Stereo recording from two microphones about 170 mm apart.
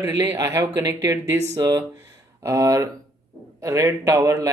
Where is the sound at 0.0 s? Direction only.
15° right (ahead or behind).